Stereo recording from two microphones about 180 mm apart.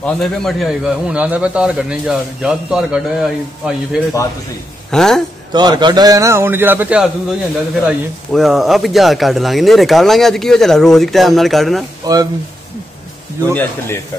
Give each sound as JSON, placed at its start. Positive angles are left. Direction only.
{"t": 0.0, "sound": "a man's voice", "side_deg": 0}
{"t": 5.5, "sound": "a man's voice", "side_deg": -25}
{"t": 12.1, "sound": "speech", "side_deg": -20}
{"t": 13.5, "sound": "a man's voice", "side_deg": 10}